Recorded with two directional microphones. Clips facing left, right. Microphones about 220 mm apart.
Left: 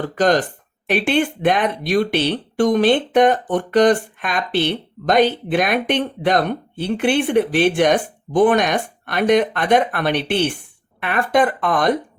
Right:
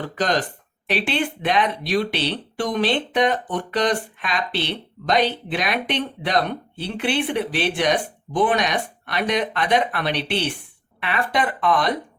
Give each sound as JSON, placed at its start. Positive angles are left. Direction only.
{"t": 0.2, "sound": "speech", "side_deg": 50}